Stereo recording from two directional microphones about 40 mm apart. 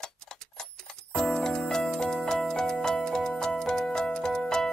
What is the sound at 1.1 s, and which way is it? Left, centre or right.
Music, centre.